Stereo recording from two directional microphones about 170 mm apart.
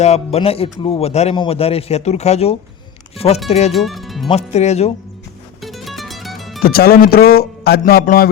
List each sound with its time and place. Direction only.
0.0 s speech: 40° left (ahead or behind)
3.7 s speech: centre (ahead or behind)
4.3 s speech: 40° left (ahead or behind)
5.6 s music: centre (ahead or behind)
6.6 s speech: 60° left (ahead or behind)